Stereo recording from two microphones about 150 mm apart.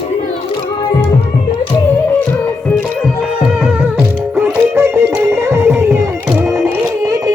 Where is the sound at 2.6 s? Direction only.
Centre (ahead or behind).